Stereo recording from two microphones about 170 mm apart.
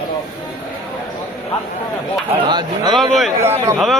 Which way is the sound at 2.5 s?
25° right (ahead or behind).